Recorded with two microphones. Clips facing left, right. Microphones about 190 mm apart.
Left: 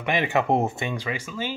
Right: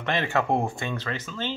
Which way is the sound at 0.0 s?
15° left (ahead or behind).